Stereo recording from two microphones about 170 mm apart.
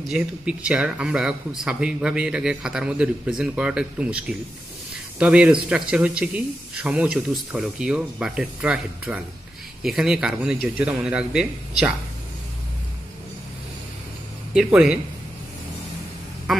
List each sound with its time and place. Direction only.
0.1 s speech: 5° right (ahead or behind)
5.2 s a man's voice: 5° right (ahead or behind)
14.5 s speech: 5° right (ahead or behind)